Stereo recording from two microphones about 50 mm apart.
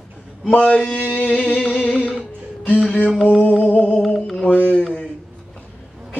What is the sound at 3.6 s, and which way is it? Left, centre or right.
Music, left.